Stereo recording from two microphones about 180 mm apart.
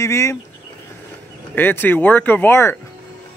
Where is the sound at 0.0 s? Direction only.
15° left (ahead or behind).